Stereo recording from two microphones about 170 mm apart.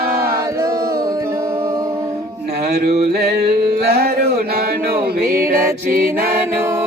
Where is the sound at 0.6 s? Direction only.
20° right (ahead or behind).